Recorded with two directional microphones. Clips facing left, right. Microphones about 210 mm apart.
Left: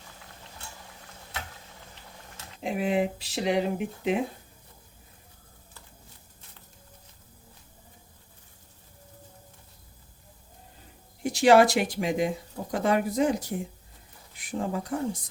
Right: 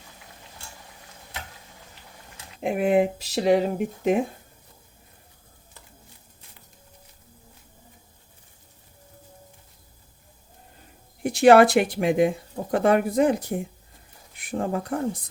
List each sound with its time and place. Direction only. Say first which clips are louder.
2.6 s speech: right 6 dB; 55° right (ahead or behind)
11.2 s speech: right 4 dB; 55° right (ahead or behind)